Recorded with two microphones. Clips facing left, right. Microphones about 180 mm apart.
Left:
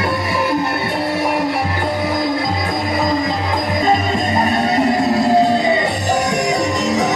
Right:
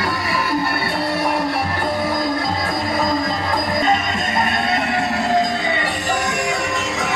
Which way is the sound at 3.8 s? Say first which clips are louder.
Left 4 dB; 35° left (ahead or behind).